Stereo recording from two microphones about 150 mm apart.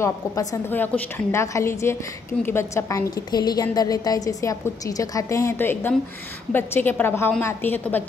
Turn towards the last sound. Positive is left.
turn(degrees=15)  # may be behind; listen again after turning